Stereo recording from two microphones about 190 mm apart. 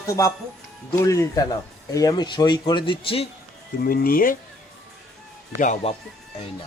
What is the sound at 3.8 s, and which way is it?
Speech, 50° left (ahead or behind).